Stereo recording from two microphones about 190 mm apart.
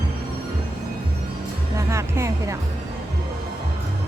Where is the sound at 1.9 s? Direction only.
15° right (ahead or behind).